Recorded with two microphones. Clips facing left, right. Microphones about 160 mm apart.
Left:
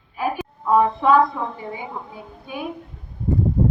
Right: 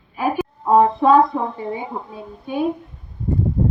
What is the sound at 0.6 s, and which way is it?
A woman's voice, 30° right (ahead or behind).